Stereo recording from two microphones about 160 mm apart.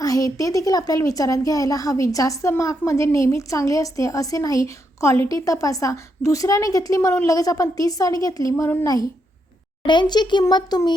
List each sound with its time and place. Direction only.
0.0 s a woman's voice: 20° left (ahead or behind)